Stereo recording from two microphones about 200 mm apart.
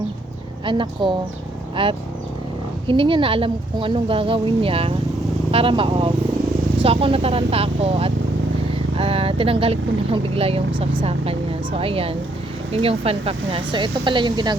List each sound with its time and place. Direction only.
0.6 s a woman's voice: 25° right (ahead or behind)
10.7 s speech: 70° right (ahead or behind)
11.0 s a woman's voice: 30° right (ahead or behind)